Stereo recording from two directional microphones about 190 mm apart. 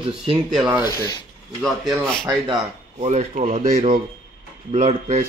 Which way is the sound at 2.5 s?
35° right (ahead or behind).